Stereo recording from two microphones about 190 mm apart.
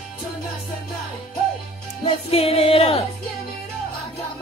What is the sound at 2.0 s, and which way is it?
A woman's voice, 30° left (ahead or behind).